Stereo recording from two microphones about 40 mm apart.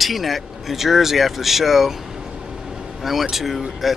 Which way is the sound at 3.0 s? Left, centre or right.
Centre.